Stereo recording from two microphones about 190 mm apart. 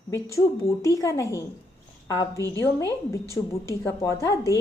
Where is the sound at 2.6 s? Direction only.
15° left (ahead or behind).